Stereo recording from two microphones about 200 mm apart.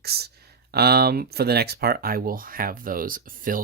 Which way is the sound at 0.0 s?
55° right (ahead or behind).